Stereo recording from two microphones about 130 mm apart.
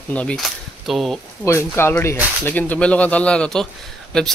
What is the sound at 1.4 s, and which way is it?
Speech, 20° left (ahead or behind).